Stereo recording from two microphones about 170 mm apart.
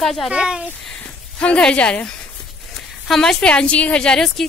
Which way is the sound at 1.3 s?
5° left (ahead or behind).